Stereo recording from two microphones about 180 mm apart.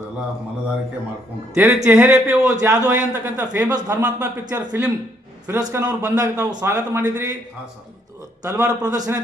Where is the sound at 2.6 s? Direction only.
20° right (ahead or behind).